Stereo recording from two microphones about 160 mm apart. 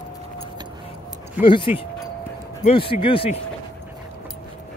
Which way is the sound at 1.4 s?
30° left (ahead or behind).